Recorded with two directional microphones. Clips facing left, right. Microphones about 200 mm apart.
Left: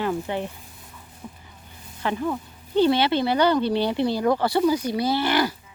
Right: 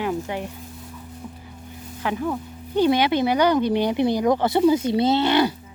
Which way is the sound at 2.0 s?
5° right (ahead or behind).